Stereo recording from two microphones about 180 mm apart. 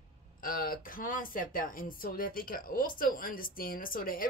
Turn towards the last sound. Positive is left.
turn(degrees=50)  # may be behind; listen again after turning